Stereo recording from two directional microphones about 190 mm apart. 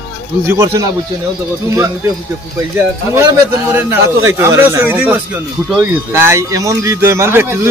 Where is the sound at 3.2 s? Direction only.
15° right (ahead or behind).